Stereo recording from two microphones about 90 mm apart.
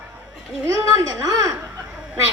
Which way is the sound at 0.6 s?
45° right (ahead or behind).